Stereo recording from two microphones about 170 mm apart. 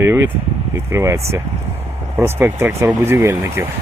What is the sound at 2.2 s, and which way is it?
Speech, 15° right (ahead or behind).